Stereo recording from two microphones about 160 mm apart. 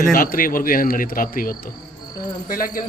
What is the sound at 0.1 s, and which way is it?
Speech, 60° left (ahead or behind).